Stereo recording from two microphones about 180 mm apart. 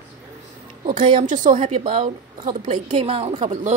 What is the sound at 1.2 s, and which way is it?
A woman's voice, 45° right (ahead or behind).